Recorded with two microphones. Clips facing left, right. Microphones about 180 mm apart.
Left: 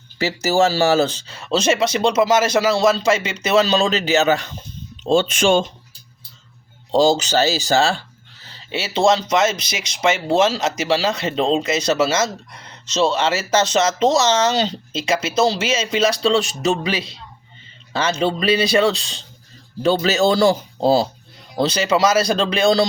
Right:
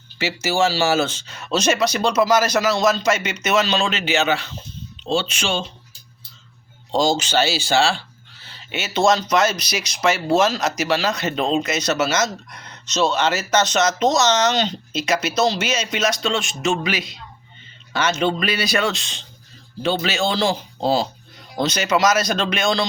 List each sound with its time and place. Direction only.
0.2 s speech: 40° left (ahead or behind)
6.9 s speech: 35° left (ahead or behind)